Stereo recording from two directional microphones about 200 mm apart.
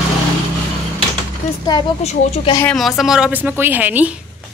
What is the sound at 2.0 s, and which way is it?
Speech, 35° left (ahead or behind).